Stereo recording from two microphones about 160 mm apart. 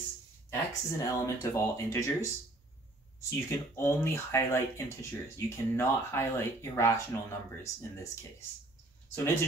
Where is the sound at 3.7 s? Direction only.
15° left (ahead or behind).